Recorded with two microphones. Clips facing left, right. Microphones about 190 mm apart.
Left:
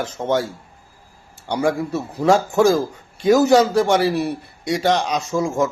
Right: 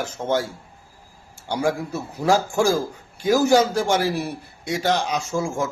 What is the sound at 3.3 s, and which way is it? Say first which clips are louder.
Speech: left 3 dB; 70° left (ahead or behind).